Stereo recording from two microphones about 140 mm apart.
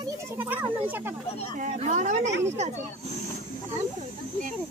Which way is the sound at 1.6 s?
65° right (ahead or behind).